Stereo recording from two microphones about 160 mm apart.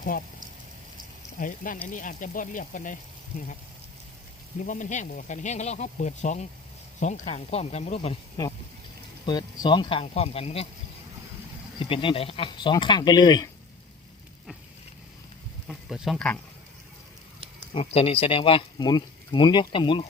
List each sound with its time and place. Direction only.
1.4 s speech: 55° left (ahead or behind)
4.6 s speech: 50° left (ahead or behind)
9.2 s speech: 30° left (ahead or behind)
11.8 s speech: 35° left (ahead or behind)
15.6 s speech: centre (ahead or behind)
17.7 s speech: 35° left (ahead or behind)